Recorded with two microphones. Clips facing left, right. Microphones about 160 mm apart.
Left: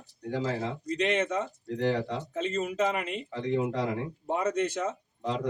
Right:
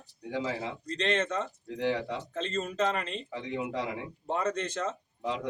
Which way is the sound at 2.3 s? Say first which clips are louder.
Left 4 dB; 10° left (ahead or behind).